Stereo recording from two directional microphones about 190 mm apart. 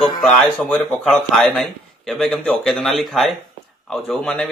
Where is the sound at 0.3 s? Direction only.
5° left (ahead or behind).